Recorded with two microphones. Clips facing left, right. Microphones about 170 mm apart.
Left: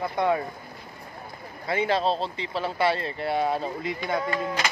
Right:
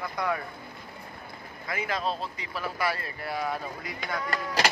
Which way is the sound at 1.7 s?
30° left (ahead or behind).